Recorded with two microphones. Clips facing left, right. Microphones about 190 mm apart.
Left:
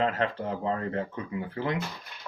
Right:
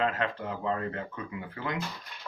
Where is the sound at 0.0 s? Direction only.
30° left (ahead or behind).